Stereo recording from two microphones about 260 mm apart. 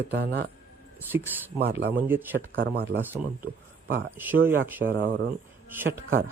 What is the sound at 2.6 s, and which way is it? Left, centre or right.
Speech, right.